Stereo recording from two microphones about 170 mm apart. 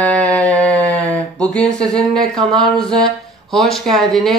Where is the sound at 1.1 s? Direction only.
5° left (ahead or behind).